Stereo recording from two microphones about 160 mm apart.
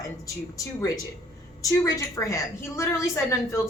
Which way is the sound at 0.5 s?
20° left (ahead or behind).